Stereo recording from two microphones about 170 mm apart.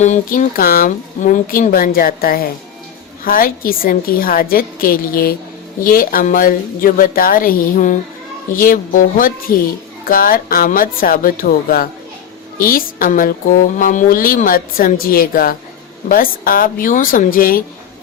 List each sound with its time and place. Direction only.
0.0 s speech: 45° left (ahead or behind)